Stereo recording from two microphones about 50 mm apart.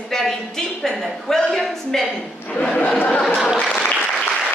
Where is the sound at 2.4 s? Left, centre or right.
Left.